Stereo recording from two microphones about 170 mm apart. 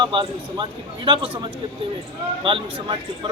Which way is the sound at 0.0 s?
25° right (ahead or behind).